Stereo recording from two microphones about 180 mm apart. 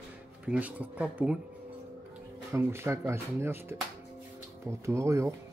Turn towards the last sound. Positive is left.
turn(degrees=-15)  # may be behind; listen again after turning